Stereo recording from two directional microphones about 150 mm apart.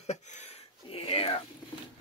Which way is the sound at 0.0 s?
50° left (ahead or behind).